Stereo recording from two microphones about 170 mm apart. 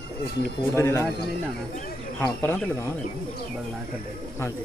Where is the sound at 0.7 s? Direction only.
15° left (ahead or behind).